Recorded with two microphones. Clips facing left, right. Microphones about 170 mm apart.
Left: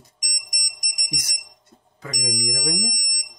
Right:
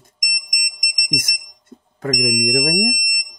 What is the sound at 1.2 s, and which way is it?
Alarm, 55° right (ahead or behind).